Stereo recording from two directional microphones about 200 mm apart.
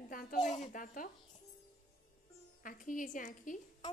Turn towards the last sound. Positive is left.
turn(degrees=40)  # may be behind; listen again after turning